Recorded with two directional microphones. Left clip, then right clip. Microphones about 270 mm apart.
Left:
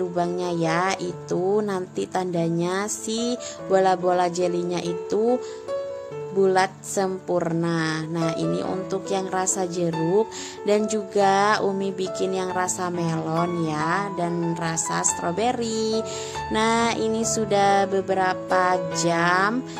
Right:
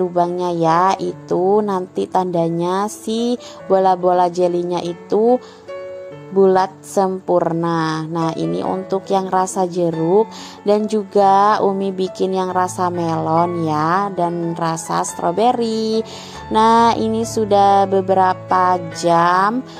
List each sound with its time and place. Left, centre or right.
0.1 s speech: centre
6.4 s speech: centre